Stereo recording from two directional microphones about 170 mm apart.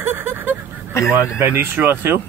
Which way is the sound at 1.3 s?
10° right (ahead or behind).